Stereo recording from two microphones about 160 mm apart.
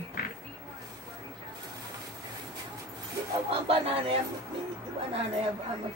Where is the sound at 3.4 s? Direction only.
35° right (ahead or behind).